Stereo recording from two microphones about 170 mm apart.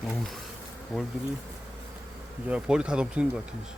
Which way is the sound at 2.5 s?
5° right (ahead or behind).